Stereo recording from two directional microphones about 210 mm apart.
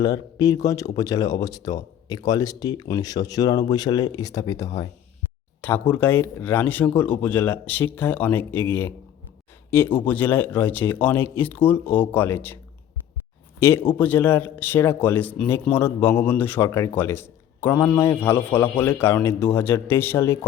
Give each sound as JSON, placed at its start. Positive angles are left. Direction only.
{"t": 0.0, "sound": "speech", "side_deg": 20}
{"t": 13.6, "sound": "speech", "side_deg": 10}